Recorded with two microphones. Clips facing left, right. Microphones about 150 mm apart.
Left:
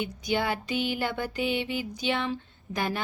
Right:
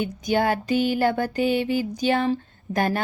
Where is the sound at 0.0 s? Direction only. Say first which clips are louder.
Right 6 dB; 45° right (ahead or behind).